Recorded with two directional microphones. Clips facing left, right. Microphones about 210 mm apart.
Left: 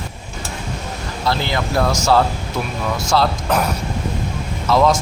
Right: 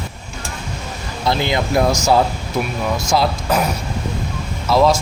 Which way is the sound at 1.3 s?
20° right (ahead or behind).